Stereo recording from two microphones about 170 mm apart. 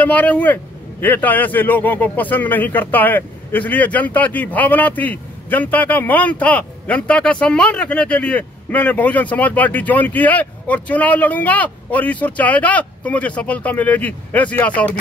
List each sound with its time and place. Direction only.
0.0 s speech: 10° left (ahead or behind)